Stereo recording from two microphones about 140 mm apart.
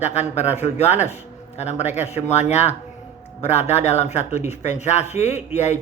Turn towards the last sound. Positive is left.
turn(degrees=55)  # may be behind; listen again after turning